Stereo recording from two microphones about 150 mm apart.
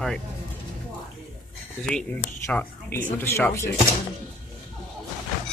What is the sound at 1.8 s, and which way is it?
Speech, 5° left (ahead or behind).